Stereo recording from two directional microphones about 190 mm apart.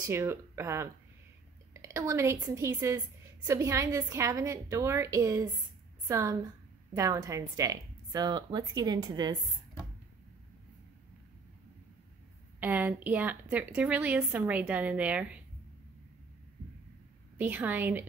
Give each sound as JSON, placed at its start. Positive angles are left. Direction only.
{"t": 0.0, "sound": "a woman's voice", "side_deg": -15}
{"t": 12.5, "sound": "a woman's voice", "side_deg": -10}
{"t": 17.4, "sound": "a woman's voice", "side_deg": -10}